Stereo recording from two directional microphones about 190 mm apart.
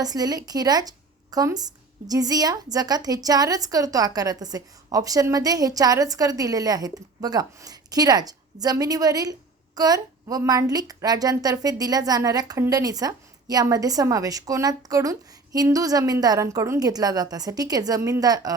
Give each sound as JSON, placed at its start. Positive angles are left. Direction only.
{"t": 0.0, "sound": "a woman's voice", "side_deg": -20}